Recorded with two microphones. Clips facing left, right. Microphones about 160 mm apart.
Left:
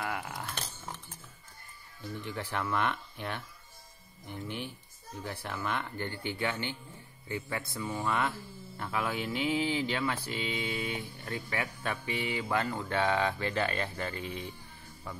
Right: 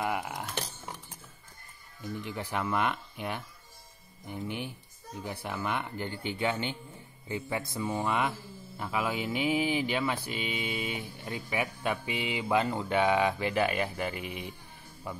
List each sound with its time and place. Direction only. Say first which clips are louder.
0.0 s cutlery: right 4 dB; 20° right (ahead or behind)
2.2 s speech: right 1 dB; 15° right (ahead or behind)